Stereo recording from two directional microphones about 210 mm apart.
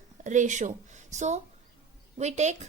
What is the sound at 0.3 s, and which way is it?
A woman's voice, 35° right (ahead or behind).